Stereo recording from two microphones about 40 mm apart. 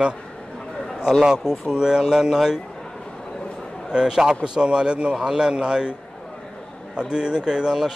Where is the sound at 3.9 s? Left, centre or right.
Centre.